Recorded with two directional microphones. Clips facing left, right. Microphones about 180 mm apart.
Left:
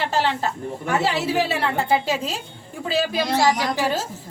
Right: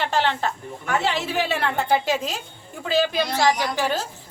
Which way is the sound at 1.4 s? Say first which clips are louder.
Left 1 dB; centre (ahead or behind).